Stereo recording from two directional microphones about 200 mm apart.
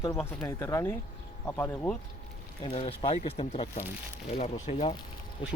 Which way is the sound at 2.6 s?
25° left (ahead or behind).